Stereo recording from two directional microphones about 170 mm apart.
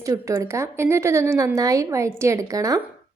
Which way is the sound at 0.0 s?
20° right (ahead or behind).